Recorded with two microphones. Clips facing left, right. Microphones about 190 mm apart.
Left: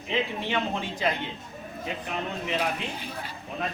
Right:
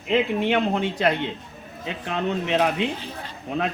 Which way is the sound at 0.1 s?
60° right (ahead or behind).